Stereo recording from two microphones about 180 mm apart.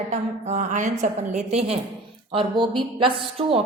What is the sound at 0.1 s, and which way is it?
A woman's voice, 40° right (ahead or behind).